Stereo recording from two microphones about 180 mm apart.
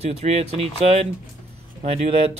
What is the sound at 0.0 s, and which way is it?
Speech, 35° right (ahead or behind).